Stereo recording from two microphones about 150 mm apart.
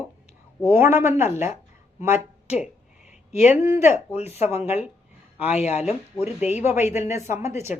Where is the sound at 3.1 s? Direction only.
50° left (ahead or behind).